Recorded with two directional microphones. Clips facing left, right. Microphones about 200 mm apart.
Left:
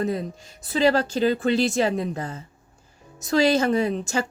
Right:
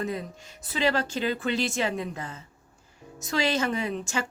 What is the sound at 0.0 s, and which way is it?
A woman's voice, 35° left (ahead or behind).